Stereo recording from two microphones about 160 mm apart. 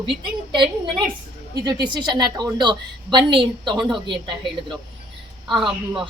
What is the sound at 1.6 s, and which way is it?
A woman's voice, 25° right (ahead or behind).